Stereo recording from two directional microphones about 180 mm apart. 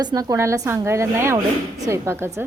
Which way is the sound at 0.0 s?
20° right (ahead or behind).